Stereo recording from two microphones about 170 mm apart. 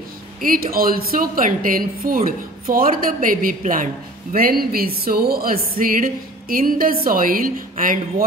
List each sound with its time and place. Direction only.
0.4 s a woman's voice: 55° right (ahead or behind)